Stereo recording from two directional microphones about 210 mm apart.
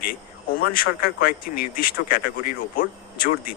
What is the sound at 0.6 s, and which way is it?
Speech, 45° left (ahead or behind).